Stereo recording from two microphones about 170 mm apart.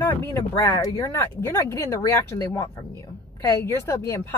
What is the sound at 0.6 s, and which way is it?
A woman's voice, 20° left (ahead or behind).